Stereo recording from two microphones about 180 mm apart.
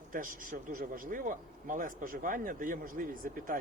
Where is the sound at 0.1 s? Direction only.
50° right (ahead or behind).